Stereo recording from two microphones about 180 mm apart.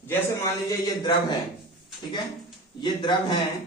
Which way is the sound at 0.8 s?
25° left (ahead or behind).